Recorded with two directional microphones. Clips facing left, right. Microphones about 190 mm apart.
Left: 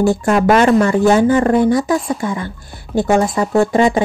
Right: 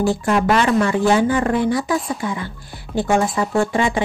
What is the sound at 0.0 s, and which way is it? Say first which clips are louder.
Speech: left 4 dB; 45° left (ahead or behind).